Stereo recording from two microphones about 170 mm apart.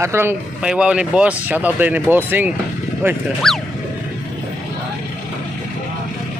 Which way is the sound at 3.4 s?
Centre (ahead or behind).